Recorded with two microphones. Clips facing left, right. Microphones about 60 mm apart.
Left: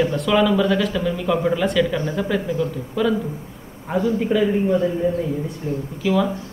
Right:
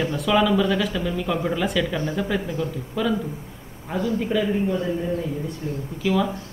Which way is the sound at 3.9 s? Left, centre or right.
Centre.